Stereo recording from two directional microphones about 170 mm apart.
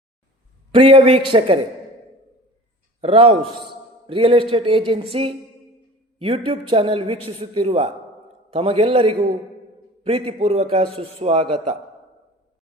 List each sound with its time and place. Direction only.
0.7 s a man's voice: 30° right (ahead or behind)
3.0 s a man's voice: 35° right (ahead or behind)